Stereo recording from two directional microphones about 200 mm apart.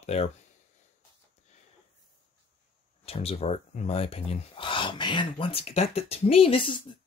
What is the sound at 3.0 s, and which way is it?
Speech, 30° left (ahead or behind).